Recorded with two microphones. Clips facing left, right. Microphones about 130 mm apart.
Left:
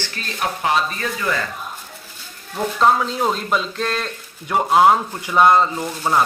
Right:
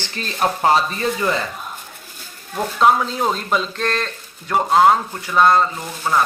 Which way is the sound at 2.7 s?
Centre (ahead or behind).